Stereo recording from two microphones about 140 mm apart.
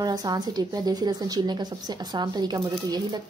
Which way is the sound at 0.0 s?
30° right (ahead or behind).